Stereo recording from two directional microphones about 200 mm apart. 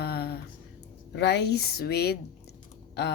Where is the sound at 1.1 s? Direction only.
60° left (ahead or behind).